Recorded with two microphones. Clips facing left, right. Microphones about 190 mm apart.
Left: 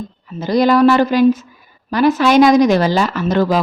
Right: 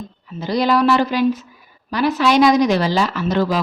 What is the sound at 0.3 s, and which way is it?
Speech, 50° left (ahead or behind).